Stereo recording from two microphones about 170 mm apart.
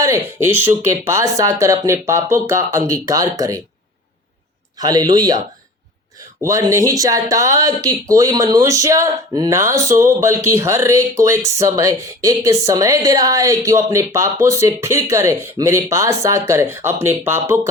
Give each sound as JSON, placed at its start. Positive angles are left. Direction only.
{"t": 0.0, "sound": "speech", "side_deg": -15}
{"t": 4.8, "sound": "speech", "side_deg": -20}
{"t": 6.4, "sound": "speech", "side_deg": -20}